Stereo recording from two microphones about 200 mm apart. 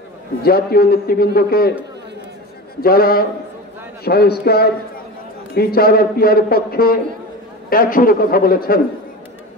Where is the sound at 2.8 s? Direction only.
50° left (ahead or behind).